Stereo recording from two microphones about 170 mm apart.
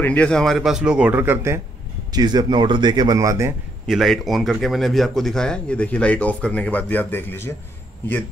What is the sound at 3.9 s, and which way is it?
Speech, centre (ahead or behind).